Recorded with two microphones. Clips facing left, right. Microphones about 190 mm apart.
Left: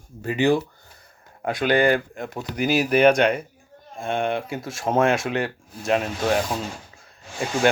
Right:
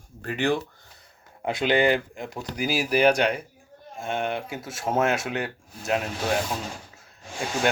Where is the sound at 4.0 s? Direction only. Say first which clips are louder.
Left 4 dB; 5° right (ahead or behind).